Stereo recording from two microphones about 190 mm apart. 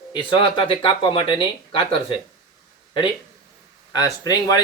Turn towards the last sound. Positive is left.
turn(degrees=20)  # may be behind; listen again after turning